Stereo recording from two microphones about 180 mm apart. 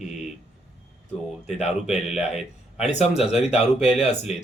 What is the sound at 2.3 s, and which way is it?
Speech, 35° left (ahead or behind).